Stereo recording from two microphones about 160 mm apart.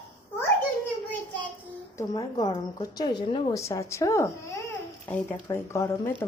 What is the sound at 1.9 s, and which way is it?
A woman's voice, 25° left (ahead or behind).